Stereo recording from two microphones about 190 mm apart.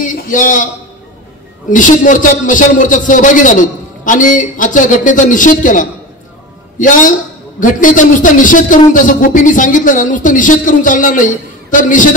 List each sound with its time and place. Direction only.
0.0 s a man's voice: 45° left (ahead or behind)
1.7 s a man's voice: 45° left (ahead or behind)